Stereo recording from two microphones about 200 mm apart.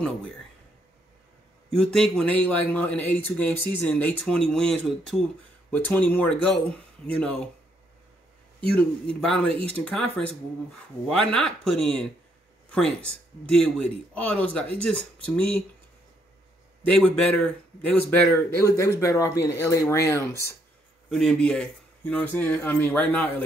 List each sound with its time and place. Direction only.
1.7 s a man's voice: 5° left (ahead or behind)
8.7 s speech: 5° left (ahead or behind)
9.5 s speech: 30° right (ahead or behind)
9.8 s a man's voice: 5° left (ahead or behind)
16.8 s a man's voice: 5° left (ahead or behind)
21.1 s a man's voice: centre (ahead or behind)